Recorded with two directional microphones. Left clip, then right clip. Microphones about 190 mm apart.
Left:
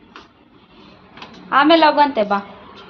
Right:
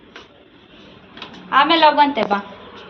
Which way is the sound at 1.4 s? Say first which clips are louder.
Left 1 dB; 40° left (ahead or behind).